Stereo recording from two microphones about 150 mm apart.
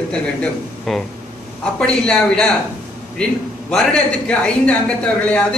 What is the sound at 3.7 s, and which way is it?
A man's voice, 5° left (ahead or behind).